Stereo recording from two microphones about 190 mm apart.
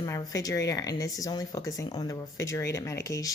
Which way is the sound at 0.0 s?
20° left (ahead or behind).